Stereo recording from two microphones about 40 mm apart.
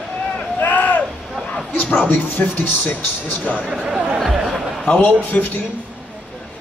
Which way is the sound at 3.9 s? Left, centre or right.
Right.